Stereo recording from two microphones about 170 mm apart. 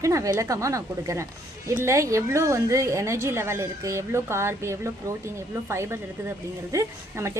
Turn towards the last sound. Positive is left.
turn(degrees=-15)  # may be behind; listen again after turning